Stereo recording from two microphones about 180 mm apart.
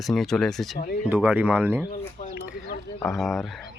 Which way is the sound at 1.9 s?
45° left (ahead or behind).